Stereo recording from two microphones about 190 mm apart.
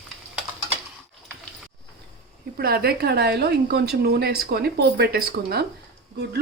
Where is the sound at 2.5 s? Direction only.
55° right (ahead or behind).